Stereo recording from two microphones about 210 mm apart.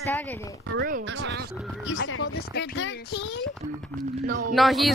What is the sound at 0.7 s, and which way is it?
Speech, 50° right (ahead or behind).